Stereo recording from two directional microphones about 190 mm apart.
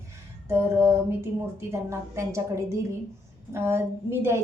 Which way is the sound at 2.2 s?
15° right (ahead or behind).